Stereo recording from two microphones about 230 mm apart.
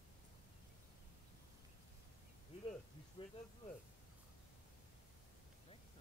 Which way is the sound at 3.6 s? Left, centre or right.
Left.